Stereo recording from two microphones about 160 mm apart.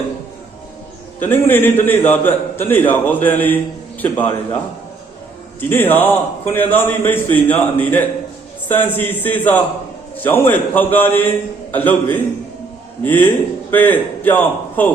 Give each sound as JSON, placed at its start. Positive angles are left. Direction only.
{"t": 1.2, "sound": "a man's voice", "side_deg": 10}